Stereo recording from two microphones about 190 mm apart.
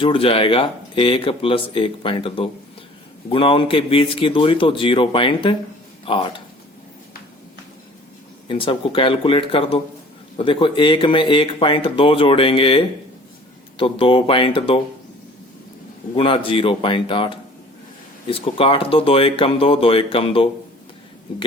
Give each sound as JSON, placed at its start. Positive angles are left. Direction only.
{"t": 0.0, "sound": "speech", "side_deg": 30}
{"t": 8.4, "sound": "speech", "side_deg": 25}
{"t": 16.1, "sound": "speech", "side_deg": 25}